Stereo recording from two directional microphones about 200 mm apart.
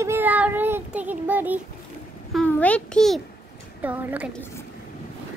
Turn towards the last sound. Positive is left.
turn(degrees=-10)  # may be behind; listen again after turning